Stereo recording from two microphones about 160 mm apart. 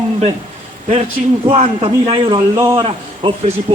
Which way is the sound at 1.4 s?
40° right (ahead or behind).